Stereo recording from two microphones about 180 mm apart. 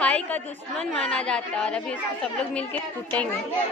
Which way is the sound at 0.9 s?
5° left (ahead or behind).